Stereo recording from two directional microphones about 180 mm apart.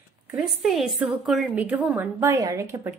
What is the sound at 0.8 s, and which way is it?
A woman's voice, centre (ahead or behind).